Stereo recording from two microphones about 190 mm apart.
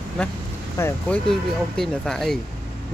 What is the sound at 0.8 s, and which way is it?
Speech, 15° left (ahead or behind).